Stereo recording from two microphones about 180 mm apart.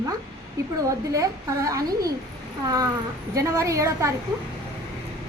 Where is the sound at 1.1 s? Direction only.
20° right (ahead or behind).